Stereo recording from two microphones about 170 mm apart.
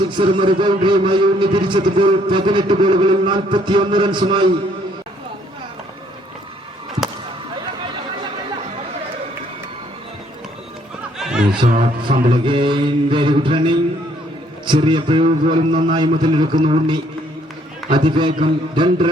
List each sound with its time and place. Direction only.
0.0 s a man's voice: 30° right (ahead or behind)
11.2 s snicker: 5° right (ahead or behind)
11.6 s speech: 50° right (ahead or behind)
12.3 s a man's voice: 30° right (ahead or behind)